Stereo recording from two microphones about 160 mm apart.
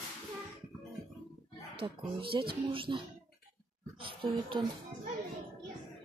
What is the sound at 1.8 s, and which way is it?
Speech, 30° right (ahead or behind).